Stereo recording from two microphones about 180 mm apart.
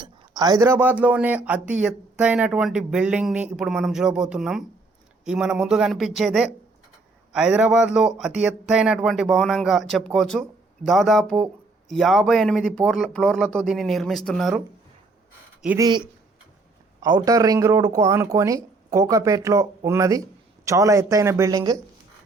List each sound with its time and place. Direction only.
0.0 s speech: 20° right (ahead or behind); by 14.6 s centre (ahead or behind)
15.8 s speech: 25° right (ahead or behind)
17.2 s speech: 20° right (ahead or behind)